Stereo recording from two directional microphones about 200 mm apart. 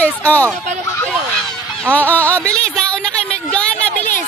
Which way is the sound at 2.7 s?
5° left (ahead or behind).